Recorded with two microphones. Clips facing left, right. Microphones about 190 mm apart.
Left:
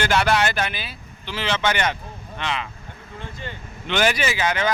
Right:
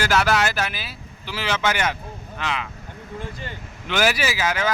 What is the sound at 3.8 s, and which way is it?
Speech, 5° right (ahead or behind).